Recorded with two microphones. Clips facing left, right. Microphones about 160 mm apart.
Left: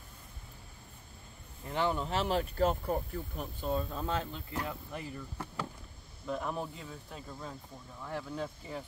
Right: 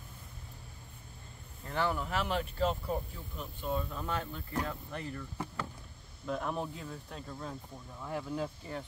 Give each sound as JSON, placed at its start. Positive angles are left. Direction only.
{"t": 1.7, "sound": "speech", "side_deg": 20}
{"t": 3.7, "sound": "speech", "side_deg": 30}
{"t": 4.6, "sound": "speech", "side_deg": 10}
{"t": 6.2, "sound": "speech", "side_deg": 0}